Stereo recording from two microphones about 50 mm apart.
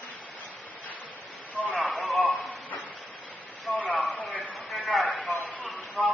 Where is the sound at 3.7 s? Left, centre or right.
Centre.